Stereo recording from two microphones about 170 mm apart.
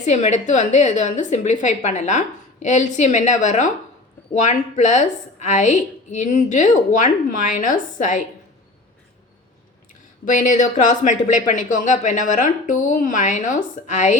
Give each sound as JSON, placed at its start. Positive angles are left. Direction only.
{"t": 0.0, "sound": "a woman's voice", "side_deg": 45}
{"t": 10.2, "sound": "a woman's voice", "side_deg": 50}